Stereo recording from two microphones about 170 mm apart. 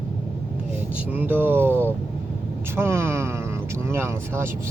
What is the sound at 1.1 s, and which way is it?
Speech, 10° right (ahead or behind).